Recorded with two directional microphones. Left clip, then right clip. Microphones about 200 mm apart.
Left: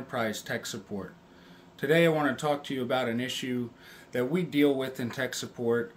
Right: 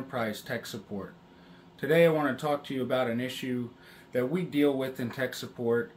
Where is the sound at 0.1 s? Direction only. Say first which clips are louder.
Left 2 dB; 20° left (ahead or behind).